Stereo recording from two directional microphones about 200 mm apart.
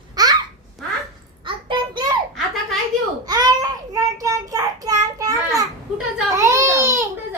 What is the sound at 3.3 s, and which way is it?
Child singing, 20° right (ahead or behind).